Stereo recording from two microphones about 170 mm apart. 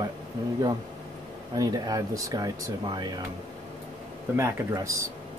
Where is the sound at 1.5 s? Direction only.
20° right (ahead or behind).